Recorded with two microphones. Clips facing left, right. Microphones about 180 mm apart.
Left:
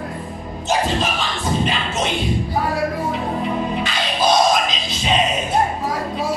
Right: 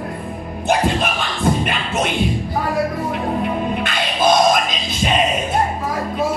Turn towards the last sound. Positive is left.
turn(degrees=-55)  # may be behind; listen again after turning